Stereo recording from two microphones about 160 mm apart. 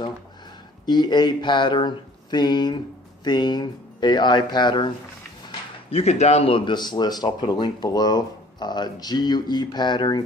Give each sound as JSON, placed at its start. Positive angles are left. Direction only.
{"t": 0.8, "sound": "speech", "side_deg": 25}
{"t": 5.9, "sound": "speech", "side_deg": 40}